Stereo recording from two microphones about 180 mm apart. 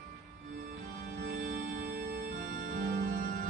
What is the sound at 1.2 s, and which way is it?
Music, 50° right (ahead or behind).